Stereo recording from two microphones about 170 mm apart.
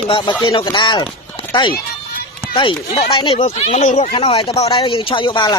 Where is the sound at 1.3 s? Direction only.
30° left (ahead or behind).